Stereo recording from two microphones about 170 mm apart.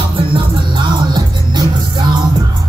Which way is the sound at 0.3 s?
25° right (ahead or behind).